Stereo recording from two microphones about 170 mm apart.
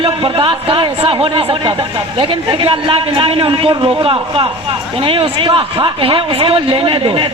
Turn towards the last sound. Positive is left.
turn(degrees=-30)  # may be behind; listen again after turning